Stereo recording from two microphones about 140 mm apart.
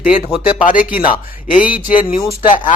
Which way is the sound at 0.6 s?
70° left (ahead or behind).